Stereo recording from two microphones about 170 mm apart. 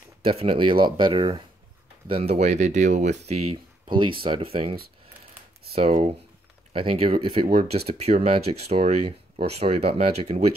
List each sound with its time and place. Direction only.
0.2 s speech: 35° right (ahead or behind)
3.9 s speech: 30° right (ahead or behind)